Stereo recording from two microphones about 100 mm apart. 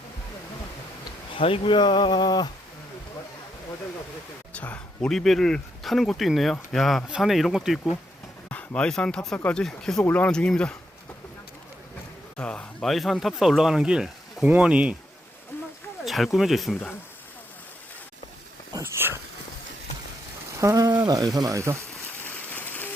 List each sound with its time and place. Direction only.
1.4 s speech: 65° left (ahead or behind); by 2.5 s 45° left (ahead or behind)
4.5 s speech: 15° left (ahead or behind)
5.1 s speech: 5° left (ahead or behind)
8.4 s speech: 15° left (ahead or behind)
12.4 s speech: 10° left (ahead or behind); by 14.9 s 10° right (ahead or behind)
15.5 s a sound: 20° left (ahead or behind)
16.0 s speech: centre (ahead or behind)
18.8 s a sound: 25° right (ahead or behind)
20.6 s speech: 35° right (ahead or behind)
22.2 s a sound: 20° left (ahead or behind)